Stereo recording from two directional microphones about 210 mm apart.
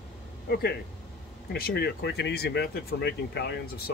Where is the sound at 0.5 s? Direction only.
50° left (ahead or behind).